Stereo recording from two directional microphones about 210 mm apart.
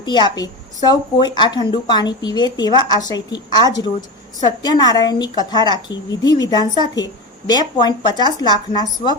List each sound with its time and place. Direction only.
0.0 s a woman's voice: 20° left (ahead or behind)